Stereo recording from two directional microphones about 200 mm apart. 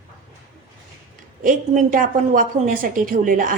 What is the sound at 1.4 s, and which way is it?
A woman's voice, 40° right (ahead or behind).